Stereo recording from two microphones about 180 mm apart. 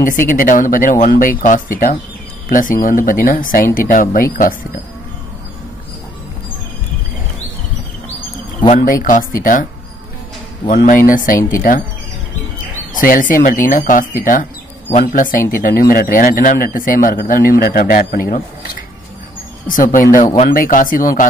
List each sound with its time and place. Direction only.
0.3 s a man's voice: 45° left (ahead or behind)
8.7 s a man's voice: 50° left (ahead or behind)
10.7 s a man's voice: 50° left (ahead or behind)
12.9 s a man's voice: 50° left (ahead or behind)
19.7 s a man's voice: 45° left (ahead or behind)